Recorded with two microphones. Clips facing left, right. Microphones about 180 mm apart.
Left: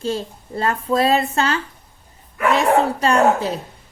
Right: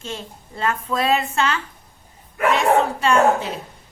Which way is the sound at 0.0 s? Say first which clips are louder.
Left 8 dB; 35° left (ahead or behind).